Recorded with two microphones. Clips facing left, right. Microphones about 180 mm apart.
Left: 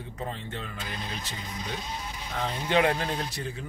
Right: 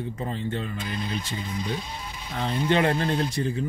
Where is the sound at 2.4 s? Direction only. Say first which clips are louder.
Right 2 dB; 5° left (ahead or behind).